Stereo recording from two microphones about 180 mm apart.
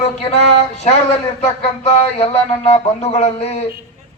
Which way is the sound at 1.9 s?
35° left (ahead or behind).